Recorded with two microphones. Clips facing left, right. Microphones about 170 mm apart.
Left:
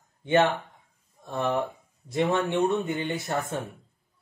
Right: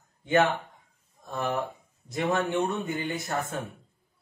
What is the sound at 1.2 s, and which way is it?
A man's voice, 25° left (ahead or behind).